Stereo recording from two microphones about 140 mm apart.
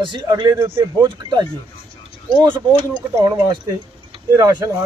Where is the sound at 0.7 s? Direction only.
15° right (ahead or behind).